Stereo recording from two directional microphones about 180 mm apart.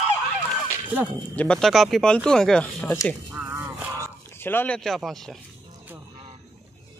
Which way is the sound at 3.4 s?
10° right (ahead or behind).